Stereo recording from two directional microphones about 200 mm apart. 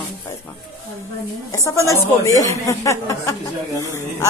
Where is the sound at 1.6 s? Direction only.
15° left (ahead or behind).